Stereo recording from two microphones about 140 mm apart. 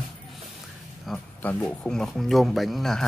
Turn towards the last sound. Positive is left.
turn(degrees=0)  # may be behind; listen again after turning